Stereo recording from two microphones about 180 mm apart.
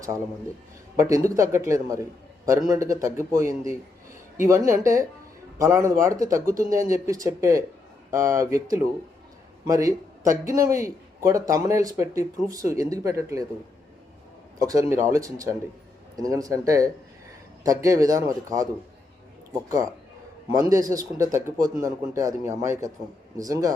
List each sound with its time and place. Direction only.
0.9 s a man's voice: 15° right (ahead or behind)
14.6 s a man's voice: 20° right (ahead or behind)
20.5 s a man's voice: 20° right (ahead or behind)